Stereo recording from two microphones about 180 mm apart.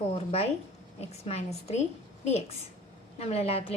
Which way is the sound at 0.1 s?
35° left (ahead or behind).